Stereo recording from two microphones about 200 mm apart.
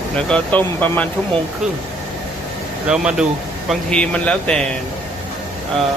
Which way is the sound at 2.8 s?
5° right (ahead or behind).